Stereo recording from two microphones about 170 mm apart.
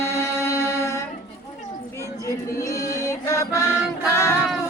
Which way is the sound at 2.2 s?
20° left (ahead or behind).